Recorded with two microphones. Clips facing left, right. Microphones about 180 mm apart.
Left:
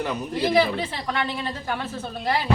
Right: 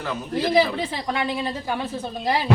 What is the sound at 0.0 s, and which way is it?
Speech, 15° left (ahead or behind).